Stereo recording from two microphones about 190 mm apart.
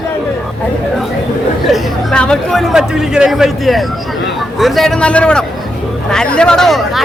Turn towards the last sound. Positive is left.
turn(degrees=0)  # may be behind; listen again after turning